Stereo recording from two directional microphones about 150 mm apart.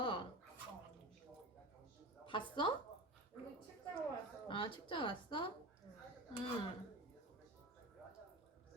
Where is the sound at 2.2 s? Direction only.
35° left (ahead or behind).